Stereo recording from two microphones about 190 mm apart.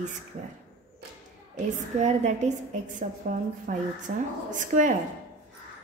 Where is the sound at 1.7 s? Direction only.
35° right (ahead or behind).